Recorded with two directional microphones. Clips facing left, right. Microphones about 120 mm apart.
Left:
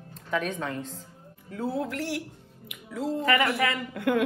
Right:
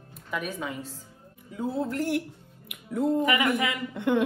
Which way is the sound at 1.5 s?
20° right (ahead or behind).